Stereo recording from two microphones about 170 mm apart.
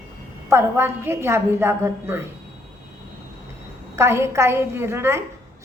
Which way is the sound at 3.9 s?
15° right (ahead or behind).